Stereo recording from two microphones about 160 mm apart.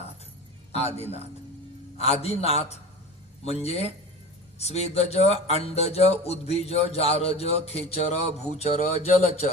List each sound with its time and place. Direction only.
0.7 s a man's voice: 40° left (ahead or behind)